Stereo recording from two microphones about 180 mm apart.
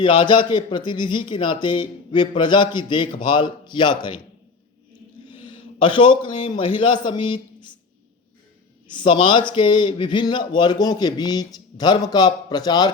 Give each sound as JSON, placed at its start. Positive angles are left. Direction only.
{"t": 0.0, "sound": "a man's voice", "side_deg": 25}
{"t": 5.3, "sound": "a man's voice", "side_deg": 25}
{"t": 8.9, "sound": "a man's voice", "side_deg": 25}